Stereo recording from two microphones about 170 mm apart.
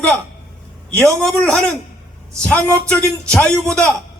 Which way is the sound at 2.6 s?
15° right (ahead or behind).